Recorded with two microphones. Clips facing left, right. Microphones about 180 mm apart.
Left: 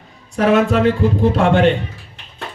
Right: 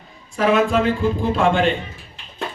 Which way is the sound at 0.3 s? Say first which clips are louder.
Left 3 dB; 70° left (ahead or behind).